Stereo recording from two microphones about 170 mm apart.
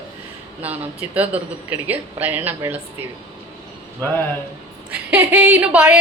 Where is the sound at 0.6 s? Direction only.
10° right (ahead or behind).